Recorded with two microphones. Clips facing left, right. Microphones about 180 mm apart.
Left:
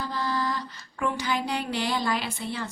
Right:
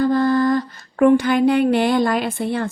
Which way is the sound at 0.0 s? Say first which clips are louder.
Right 13 dB; 50° right (ahead or behind).